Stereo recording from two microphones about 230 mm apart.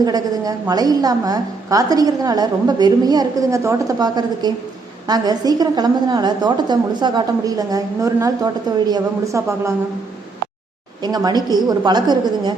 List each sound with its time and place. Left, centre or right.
0.0 s a woman's voice: centre
11.0 s a woman's voice: centre